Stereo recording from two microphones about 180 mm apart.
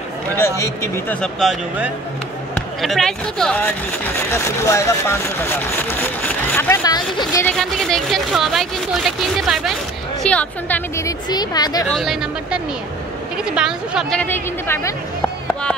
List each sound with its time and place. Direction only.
0.4 s speech: 15° left (ahead or behind)
1.4 s speech: centre (ahead or behind); by 7.4 s 20° left (ahead or behind)
7.4 s speech: centre (ahead or behind); by 11.8 s 20° left (ahead or behind)
11.9 s speech: centre (ahead or behind)
14.2 s speech: 10° left (ahead or behind)